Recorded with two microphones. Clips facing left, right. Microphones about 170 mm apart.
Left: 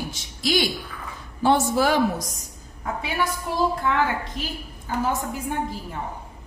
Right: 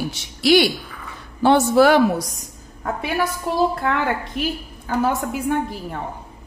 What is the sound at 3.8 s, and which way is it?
Speech, 60° right (ahead or behind).